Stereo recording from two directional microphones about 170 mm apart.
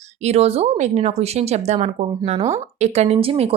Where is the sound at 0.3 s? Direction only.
35° right (ahead or behind).